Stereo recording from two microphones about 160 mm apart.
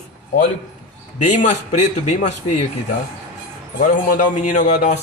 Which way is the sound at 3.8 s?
55° left (ahead or behind).